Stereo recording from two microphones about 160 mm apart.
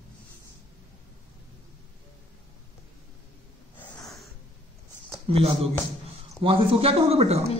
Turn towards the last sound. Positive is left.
turn(degrees=-40)  # may be behind; listen again after turning